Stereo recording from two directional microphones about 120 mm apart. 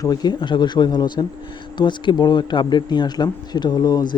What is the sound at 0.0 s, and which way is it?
Speech, 35° left (ahead or behind).